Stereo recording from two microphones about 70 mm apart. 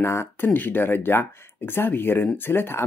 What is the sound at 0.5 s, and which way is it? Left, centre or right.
Speech, left.